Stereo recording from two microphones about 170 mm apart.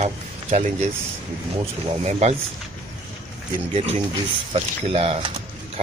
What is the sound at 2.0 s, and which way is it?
Speech, 40° right (ahead or behind).